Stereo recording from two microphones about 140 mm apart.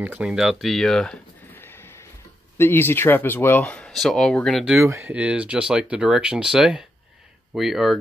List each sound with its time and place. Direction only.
0.0 s a sound: 10° right (ahead or behind); by 2.0 s 15° left (ahead or behind)
2.5 s speech: 15° left (ahead or behind)
4.8 s speech: 20° right (ahead or behind)
5.1 s speech: 10° right (ahead or behind)